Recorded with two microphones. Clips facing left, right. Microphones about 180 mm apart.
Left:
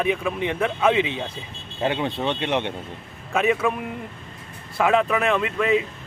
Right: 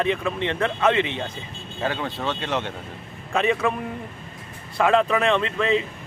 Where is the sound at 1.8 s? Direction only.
25° left (ahead or behind).